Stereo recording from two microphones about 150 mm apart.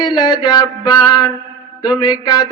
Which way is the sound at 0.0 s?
25° left (ahead or behind).